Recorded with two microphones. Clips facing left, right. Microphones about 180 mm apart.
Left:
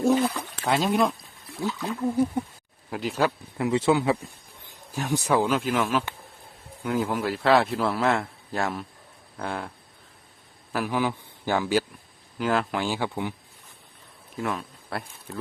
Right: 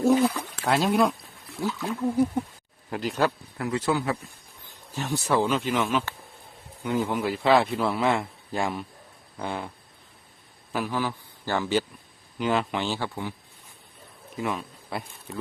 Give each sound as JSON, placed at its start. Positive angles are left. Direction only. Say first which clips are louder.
{"t": 0.0, "sound": "a man's voice", "louder": "right 1 dB", "side_deg": -5}
{"t": 3.6, "sound": "a man's voice", "louder": "left 4 dB", "side_deg": 25}
{"t": 10.8, "sound": "a man's voice", "louder": "left 6 dB", "side_deg": 15}
{"t": 12.9, "sound": "speech", "louder": "left 2 dB", "side_deg": 15}
{"t": 14.3, "sound": "speech", "louder": "even", "side_deg": 0}